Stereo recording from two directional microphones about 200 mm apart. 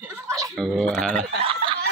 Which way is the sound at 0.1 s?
15° right (ahead or behind).